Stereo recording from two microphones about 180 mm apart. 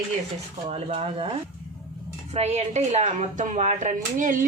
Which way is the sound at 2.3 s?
35° right (ahead or behind).